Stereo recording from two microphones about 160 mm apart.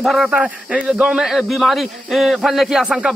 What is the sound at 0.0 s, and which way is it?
A man's voice, centre (ahead or behind).